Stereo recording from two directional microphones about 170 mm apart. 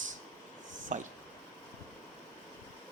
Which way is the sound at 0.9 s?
45° right (ahead or behind).